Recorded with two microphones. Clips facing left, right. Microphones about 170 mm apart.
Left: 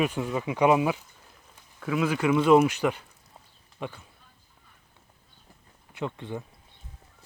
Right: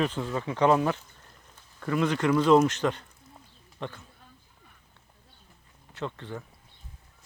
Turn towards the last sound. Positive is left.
turn(degrees=15)  # may be behind; listen again after turning